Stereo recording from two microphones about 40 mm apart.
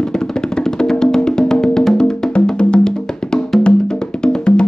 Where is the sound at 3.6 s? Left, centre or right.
Left.